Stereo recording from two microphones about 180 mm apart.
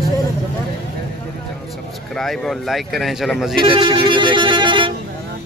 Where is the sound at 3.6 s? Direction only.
30° right (ahead or behind).